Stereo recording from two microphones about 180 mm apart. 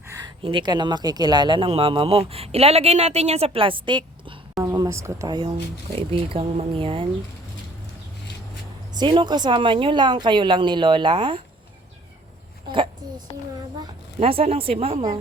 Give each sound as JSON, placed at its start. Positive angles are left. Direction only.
{"t": 0.4, "sound": "speech", "side_deg": -25}
{"t": 4.6, "sound": "speech", "side_deg": -15}
{"t": 6.0, "sound": "speech", "side_deg": -30}
{"t": 8.9, "sound": "speech", "side_deg": -25}
{"t": 12.7, "sound": "a sound", "side_deg": -25}
{"t": 14.2, "sound": "speech", "side_deg": -35}